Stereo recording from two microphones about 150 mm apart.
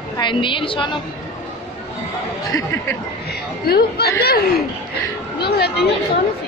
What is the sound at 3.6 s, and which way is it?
Speech, 90° left.